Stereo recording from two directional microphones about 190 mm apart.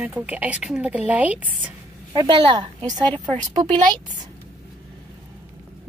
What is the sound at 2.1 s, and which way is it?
Speech, 25° right (ahead or behind).